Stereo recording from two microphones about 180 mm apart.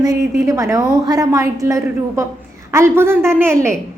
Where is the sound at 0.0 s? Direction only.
15° right (ahead or behind).